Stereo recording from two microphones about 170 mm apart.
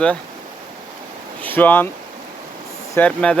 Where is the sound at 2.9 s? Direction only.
5° left (ahead or behind).